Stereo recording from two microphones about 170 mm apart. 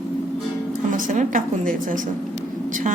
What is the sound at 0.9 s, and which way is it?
A woman's voice, 50° right (ahead or behind).